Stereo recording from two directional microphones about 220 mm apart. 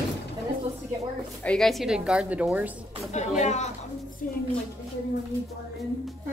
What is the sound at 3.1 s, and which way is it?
A woman's voice, 30° left (ahead or behind).